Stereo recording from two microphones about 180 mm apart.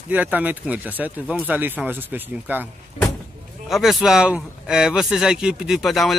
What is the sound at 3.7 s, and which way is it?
Speech, centre (ahead or behind).